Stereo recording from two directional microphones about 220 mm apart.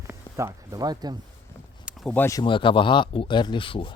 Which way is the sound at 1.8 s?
5° right (ahead or behind).